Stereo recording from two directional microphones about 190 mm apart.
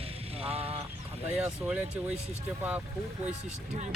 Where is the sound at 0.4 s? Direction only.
30° right (ahead or behind).